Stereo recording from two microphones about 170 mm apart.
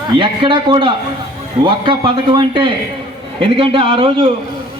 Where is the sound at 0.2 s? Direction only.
30° right (ahead or behind).